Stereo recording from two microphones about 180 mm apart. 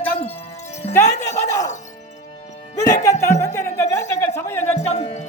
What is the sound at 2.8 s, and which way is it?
Music, 20° left (ahead or behind).